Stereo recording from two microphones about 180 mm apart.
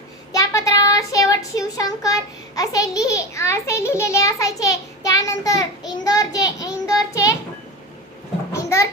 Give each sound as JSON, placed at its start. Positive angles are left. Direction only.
{"t": 0.3, "sound": "child singing", "side_deg": 20}
{"t": 2.6, "sound": "a child's voice", "side_deg": 20}
{"t": 8.5, "sound": "a sound", "side_deg": 15}